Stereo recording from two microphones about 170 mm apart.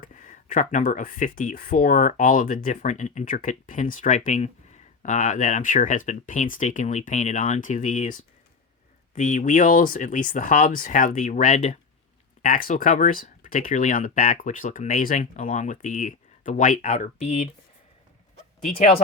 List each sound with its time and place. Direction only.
0.0 s speech: 50° left (ahead or behind)
12.4 s speech: 55° left (ahead or behind)